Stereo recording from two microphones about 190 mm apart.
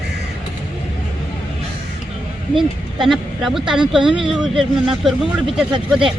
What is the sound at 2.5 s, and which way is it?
Speech, centre (ahead or behind).